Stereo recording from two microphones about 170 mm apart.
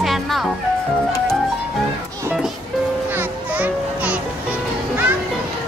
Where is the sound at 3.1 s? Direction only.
10° right (ahead or behind).